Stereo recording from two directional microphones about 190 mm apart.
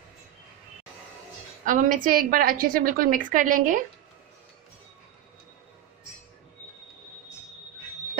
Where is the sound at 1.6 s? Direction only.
45° right (ahead or behind).